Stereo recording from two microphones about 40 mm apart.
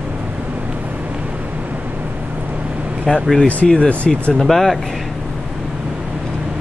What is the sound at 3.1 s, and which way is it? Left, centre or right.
Speech, centre.